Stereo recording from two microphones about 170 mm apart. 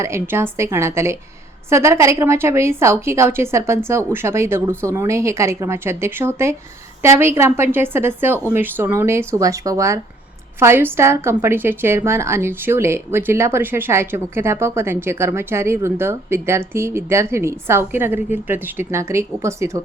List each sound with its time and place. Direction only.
0.0 s a woman's voice: 15° right (ahead or behind)